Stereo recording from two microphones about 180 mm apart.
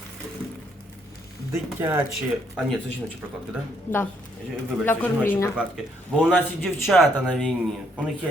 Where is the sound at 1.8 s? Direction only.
10° right (ahead or behind).